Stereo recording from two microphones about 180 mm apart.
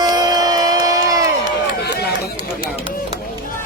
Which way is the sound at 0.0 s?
20° right (ahead or behind).